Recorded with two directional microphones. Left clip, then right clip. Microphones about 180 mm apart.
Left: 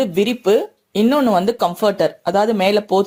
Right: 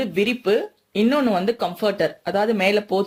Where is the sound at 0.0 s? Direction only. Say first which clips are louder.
Left 4 dB; 35° left (ahead or behind).